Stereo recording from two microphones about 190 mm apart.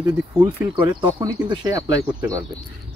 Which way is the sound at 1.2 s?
20° right (ahead or behind).